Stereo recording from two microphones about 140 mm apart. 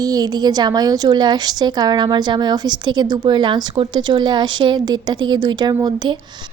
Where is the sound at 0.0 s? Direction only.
25° right (ahead or behind).